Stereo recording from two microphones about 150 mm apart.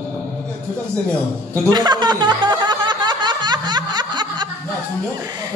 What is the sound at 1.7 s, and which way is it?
Music, 25° right (ahead or behind).